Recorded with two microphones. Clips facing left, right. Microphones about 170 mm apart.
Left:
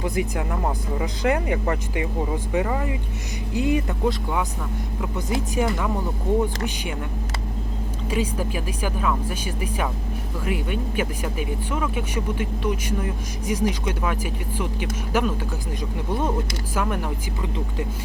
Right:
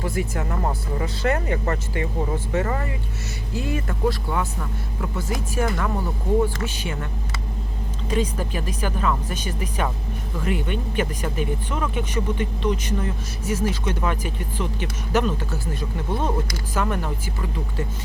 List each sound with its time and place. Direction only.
0.0 s speech: 15° left (ahead or behind)
8.1 s speech: 10° left (ahead or behind)